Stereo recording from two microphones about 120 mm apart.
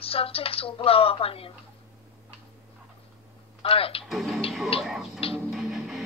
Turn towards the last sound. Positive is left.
turn(degrees=0)  # may be behind; listen again after turning